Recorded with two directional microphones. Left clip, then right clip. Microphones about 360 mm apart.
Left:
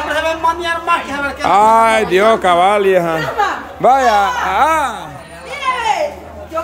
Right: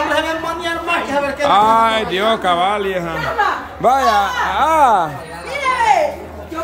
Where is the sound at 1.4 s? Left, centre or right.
Centre.